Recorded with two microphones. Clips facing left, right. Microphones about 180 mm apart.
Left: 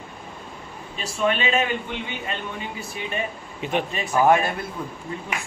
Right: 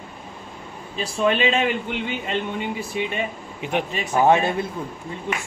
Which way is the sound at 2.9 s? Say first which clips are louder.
Right 1 dB; 20° right (ahead or behind).